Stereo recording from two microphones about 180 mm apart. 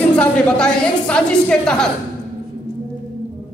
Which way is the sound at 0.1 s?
5° left (ahead or behind).